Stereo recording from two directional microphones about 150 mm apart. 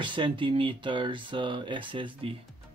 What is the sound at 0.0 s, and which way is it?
Speech, 30° right (ahead or behind).